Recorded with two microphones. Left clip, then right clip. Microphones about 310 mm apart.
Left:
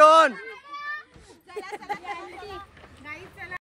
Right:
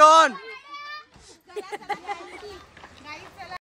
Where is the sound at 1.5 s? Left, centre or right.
Right.